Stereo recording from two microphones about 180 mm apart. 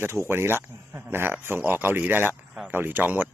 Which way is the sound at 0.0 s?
15° right (ahead or behind).